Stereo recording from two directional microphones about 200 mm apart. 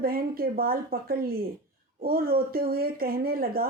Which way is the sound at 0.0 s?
50° right (ahead or behind).